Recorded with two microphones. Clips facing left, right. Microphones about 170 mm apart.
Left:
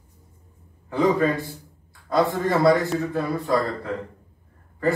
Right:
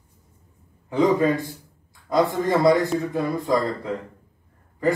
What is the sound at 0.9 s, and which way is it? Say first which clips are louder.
A man's voice: right 1 dB; 20° right (ahead or behind).